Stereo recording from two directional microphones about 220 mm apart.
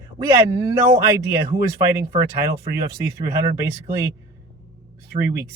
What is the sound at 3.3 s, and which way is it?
Speech, 15° right (ahead or behind).